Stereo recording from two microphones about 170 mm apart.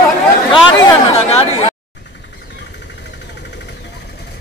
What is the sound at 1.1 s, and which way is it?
Chatter, 35° left (ahead or behind).